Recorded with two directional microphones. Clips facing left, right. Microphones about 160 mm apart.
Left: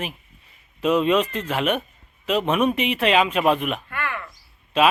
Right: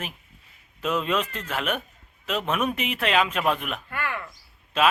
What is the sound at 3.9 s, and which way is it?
Cricket, 25° right (ahead or behind).